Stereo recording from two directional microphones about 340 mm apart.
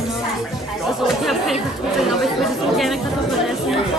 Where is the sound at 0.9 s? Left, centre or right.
Centre.